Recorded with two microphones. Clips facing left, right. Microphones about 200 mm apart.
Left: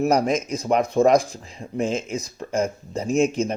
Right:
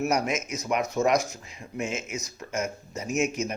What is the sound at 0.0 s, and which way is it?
Speech, 30° left (ahead or behind).